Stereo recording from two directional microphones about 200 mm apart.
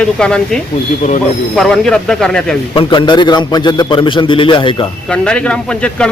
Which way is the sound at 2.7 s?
25° left (ahead or behind).